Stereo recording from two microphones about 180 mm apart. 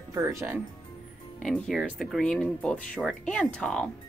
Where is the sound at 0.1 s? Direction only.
15° right (ahead or behind).